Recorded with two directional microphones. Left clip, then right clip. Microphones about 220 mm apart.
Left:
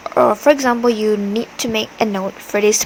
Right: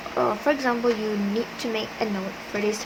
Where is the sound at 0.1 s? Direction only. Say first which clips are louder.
Left 11 dB; 45° left (ahead or behind).